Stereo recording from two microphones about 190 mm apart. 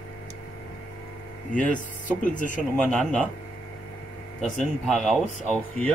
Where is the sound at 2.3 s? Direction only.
40° left (ahead or behind).